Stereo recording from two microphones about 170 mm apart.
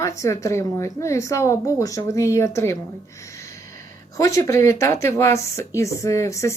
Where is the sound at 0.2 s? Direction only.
20° left (ahead or behind).